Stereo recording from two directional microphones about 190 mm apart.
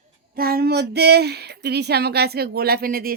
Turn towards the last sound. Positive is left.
turn(degrees=-50)  # may be behind; listen again after turning